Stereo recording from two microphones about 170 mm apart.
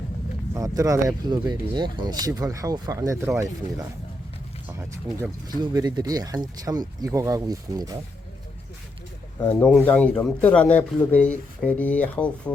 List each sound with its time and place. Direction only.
0.5 s speech: 20° right (ahead or behind)
9.4 s speech: 10° left (ahead or behind)